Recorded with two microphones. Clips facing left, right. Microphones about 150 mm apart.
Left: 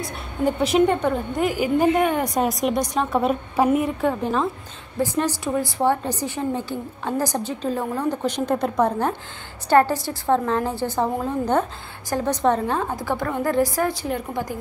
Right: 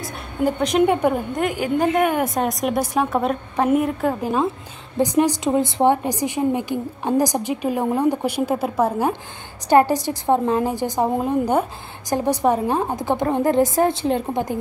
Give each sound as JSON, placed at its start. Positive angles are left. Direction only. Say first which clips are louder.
{"t": 0.0, "sound": "a woman's voice", "louder": "right 1 dB", "side_deg": 0}
{"t": 0.8, "sound": "a woman's voice", "louder": "right 2 dB", "side_deg": -10}
{"t": 1.3, "sound": "a woman's voice", "louder": "even", "side_deg": 0}
{"t": 4.9, "sound": "a woman's voice", "louder": "right 5 dB", "side_deg": -15}
{"t": 9.7, "sound": "a woman's voice", "louder": "right 2 dB", "side_deg": -15}